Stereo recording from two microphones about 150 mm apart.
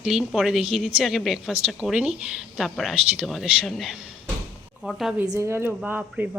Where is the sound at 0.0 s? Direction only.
5° right (ahead or behind).